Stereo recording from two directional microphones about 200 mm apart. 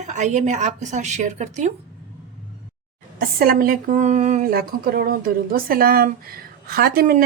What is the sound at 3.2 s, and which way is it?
Speech, 45° right (ahead or behind).